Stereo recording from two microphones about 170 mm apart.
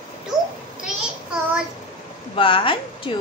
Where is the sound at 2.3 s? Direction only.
30° left (ahead or behind).